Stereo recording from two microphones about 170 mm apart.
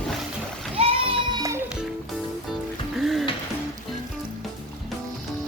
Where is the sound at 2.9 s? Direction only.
Centre (ahead or behind).